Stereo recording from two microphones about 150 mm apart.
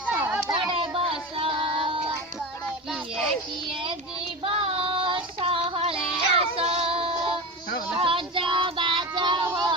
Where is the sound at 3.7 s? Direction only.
35° right (ahead or behind).